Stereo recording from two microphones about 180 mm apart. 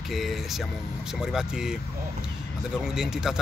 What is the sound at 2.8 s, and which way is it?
Speech, 5° right (ahead or behind).